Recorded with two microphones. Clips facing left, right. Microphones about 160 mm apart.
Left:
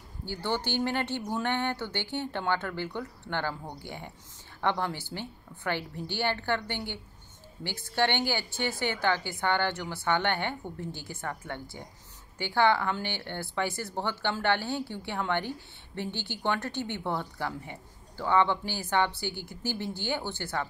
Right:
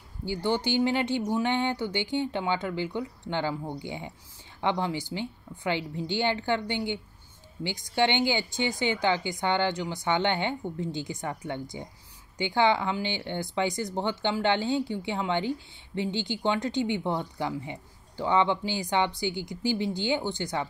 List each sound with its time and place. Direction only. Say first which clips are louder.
0.2 s speech: right 4 dB; 15° right (ahead or behind)